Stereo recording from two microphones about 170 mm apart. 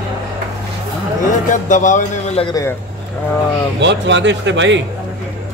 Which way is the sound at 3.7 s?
90° right.